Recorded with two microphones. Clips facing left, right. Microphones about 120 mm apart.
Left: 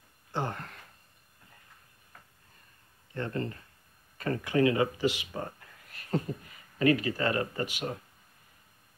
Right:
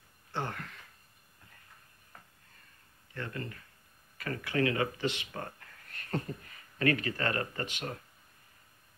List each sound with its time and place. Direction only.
0.3 s a sound: 20° left (ahead or behind)
3.2 s speech: 30° left (ahead or behind)
4.9 s speech: 10° left (ahead or behind)